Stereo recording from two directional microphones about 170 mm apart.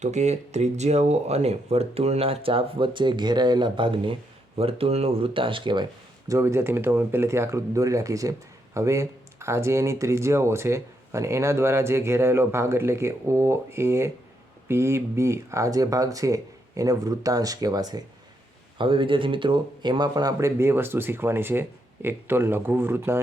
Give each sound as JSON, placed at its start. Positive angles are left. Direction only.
{"t": 0.0, "sound": "speech", "side_deg": -40}